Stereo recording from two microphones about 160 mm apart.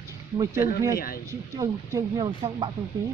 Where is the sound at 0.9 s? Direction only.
65° left (ahead or behind).